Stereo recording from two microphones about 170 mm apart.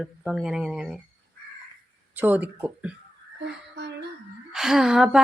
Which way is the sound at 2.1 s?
10° right (ahead or behind).